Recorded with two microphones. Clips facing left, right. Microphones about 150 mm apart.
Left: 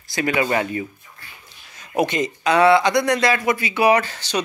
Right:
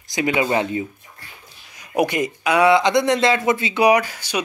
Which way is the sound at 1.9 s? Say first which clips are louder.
Right 1 dB; 10° right (ahead or behind).